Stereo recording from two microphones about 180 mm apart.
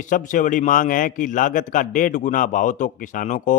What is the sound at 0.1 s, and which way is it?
A man's voice, 45° left (ahead or behind).